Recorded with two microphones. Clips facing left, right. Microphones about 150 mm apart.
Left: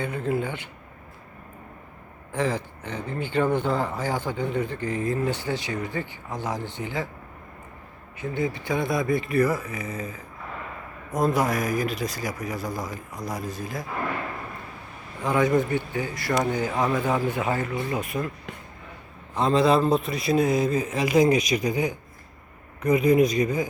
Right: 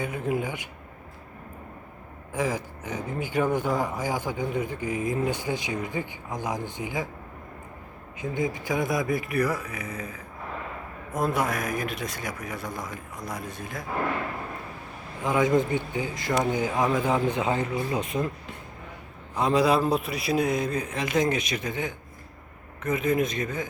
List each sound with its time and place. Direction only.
0.0 s speech: 10° right (ahead or behind)
2.3 s speech: 10° right (ahead or behind)
8.2 s speech: 15° right (ahead or behind)
9.4 s a man's voice: 5° left (ahead or behind)
11.1 s a man's voice: 5° right (ahead or behind)
12.5 s speech: 35° left (ahead or behind)
15.2 s speech: 20° right (ahead or behind)
19.4 s a man's voice: 10° right (ahead or behind); by 23.6 s 10° left (ahead or behind)